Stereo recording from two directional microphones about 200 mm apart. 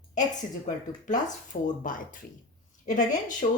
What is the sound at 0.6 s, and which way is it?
A woman's voice, 40° left (ahead or behind).